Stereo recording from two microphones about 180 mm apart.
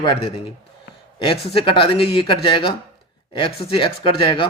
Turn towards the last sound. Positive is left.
turn(degrees=30)  # may be behind; listen again after turning